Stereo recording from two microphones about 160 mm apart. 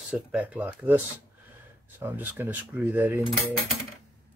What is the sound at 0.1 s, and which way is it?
Speech, 5° right (ahead or behind).